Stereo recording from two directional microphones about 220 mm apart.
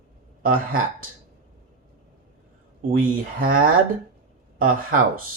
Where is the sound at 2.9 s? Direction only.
40° right (ahead or behind).